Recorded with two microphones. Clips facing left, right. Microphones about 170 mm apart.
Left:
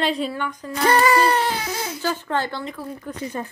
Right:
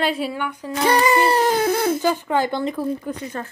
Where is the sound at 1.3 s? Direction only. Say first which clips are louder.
Right 5 dB; 45° right (ahead or behind).